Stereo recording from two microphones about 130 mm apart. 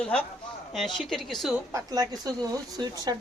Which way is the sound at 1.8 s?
30° right (ahead or behind).